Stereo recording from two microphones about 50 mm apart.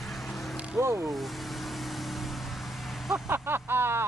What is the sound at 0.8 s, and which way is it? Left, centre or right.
Speech, right.